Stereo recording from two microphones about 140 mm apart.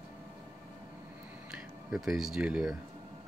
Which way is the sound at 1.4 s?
5° right (ahead or behind).